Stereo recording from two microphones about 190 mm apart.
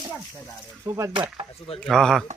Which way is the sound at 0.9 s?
15° right (ahead or behind).